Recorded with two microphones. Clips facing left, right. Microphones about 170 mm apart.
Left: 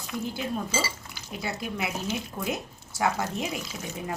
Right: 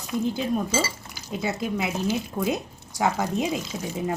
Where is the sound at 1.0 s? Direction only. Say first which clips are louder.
Right 6 dB; 20° right (ahead or behind).